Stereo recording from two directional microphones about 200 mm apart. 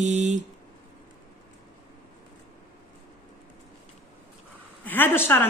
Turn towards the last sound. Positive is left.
turn(degrees=10)  # may be behind; listen again after turning